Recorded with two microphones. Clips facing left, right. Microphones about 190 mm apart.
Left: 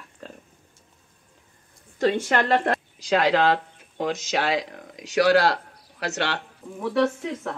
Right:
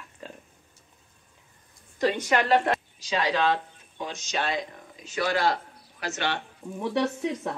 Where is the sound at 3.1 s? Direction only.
70° left (ahead or behind).